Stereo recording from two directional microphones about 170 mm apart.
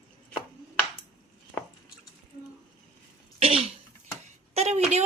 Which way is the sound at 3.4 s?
35° right (ahead or behind).